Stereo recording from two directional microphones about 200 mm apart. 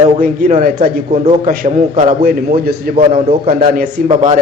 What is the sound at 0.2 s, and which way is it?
Speech, 45° right (ahead or behind).